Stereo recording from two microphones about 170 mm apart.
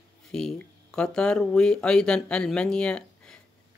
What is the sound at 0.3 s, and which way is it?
Speech, 5° left (ahead or behind).